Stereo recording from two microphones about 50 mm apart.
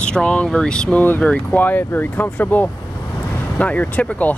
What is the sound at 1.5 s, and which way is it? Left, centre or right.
Speech, left.